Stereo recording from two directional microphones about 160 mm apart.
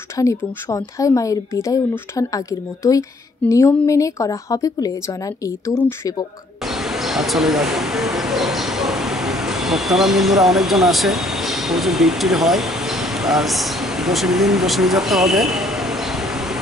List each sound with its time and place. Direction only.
0.1 s a woman's voice: 15° left (ahead or behind)
6.6 s speech: centre (ahead or behind)